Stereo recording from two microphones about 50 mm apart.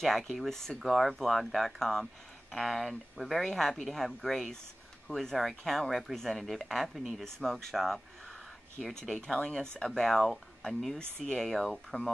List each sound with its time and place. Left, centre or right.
0.0 s speech: centre
7.2 s speech: centre
11.0 s speech: centre
11.3 s speech: centre
11.7 s speech: centre